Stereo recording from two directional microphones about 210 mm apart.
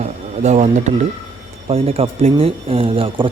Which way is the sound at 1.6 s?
30° right (ahead or behind).